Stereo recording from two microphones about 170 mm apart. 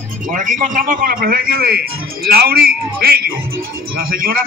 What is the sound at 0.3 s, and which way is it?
A man's voice, 50° right (ahead or behind).